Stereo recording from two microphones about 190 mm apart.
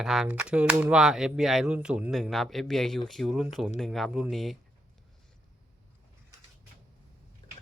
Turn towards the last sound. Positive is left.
turn(degrees=30)  # may be behind; listen again after turning